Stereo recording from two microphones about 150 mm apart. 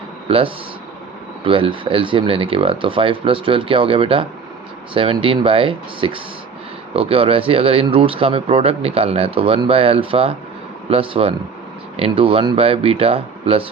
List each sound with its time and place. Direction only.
0.3 s speech: 40° right (ahead or behind)